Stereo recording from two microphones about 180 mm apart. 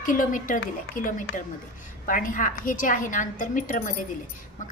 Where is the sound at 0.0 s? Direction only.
50° left (ahead or behind).